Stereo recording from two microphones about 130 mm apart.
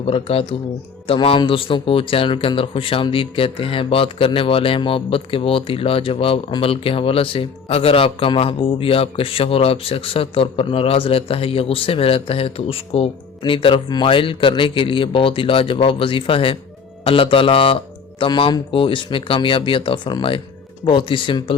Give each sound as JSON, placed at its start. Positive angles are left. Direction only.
{"t": 0.0, "sound": "a man's voice", "side_deg": 45}